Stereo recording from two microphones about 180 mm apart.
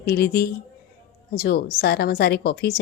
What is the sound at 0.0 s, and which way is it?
A woman's voice, 60° left (ahead or behind).